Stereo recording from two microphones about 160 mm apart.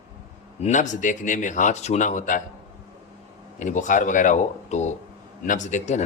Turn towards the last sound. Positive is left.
turn(degrees=50)  # may be behind; listen again after turning